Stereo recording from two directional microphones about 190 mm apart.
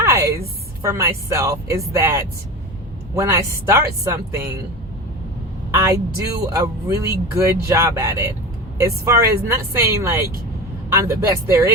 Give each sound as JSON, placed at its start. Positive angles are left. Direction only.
{"t": 0.0, "sound": "a sound", "side_deg": -15}
{"t": 0.8, "sound": "speech", "side_deg": -15}
{"t": 5.7, "sound": "speech", "side_deg": -15}